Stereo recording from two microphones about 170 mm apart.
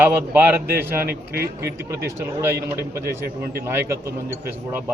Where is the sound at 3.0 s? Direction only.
65° right (ahead or behind).